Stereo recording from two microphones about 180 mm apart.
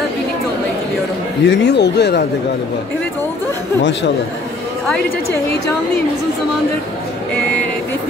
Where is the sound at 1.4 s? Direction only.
80° left.